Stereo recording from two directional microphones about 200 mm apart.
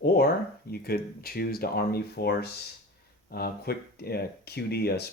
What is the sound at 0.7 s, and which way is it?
Speech, 50° left (ahead or behind).